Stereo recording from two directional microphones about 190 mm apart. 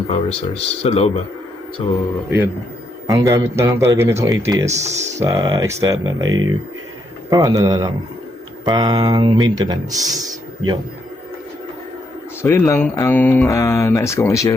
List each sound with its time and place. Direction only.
0.1 s speech: 30° left (ahead or behind)
3.1 s speech: 15° right (ahead or behind)
4.7 s speech: 35° right (ahead or behind)
5.2 s speech: 20° right (ahead or behind)
12.4 s speech: 15° left (ahead or behind)